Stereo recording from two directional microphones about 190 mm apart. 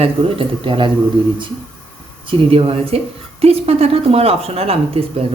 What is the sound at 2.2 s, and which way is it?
A woman's voice, 30° right (ahead or behind).